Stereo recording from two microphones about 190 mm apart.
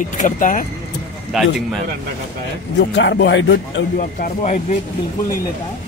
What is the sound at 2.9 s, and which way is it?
Speech, 65° left (ahead or behind).